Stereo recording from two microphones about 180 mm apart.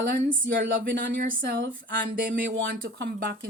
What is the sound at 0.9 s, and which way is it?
Speech, 90° right.